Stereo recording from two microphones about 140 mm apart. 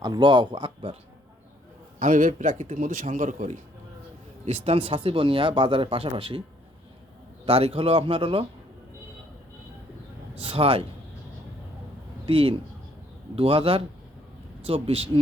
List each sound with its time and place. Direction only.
0.0 s speech: 30° right (ahead or behind)
2.0 s a man's voice: 65° right (ahead or behind)
4.4 s speech: 45° right (ahead or behind)
7.4 s speech: 45° right (ahead or behind)
10.4 s speech: 45° right (ahead or behind)
12.2 s speech: 40° right (ahead or behind)